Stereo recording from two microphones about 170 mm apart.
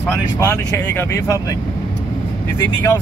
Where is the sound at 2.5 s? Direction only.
15° left (ahead or behind).